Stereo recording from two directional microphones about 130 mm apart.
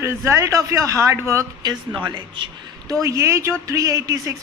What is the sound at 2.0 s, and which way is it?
Speech, 35° right (ahead or behind).